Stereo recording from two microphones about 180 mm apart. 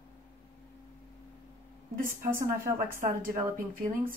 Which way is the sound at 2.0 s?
15° right (ahead or behind).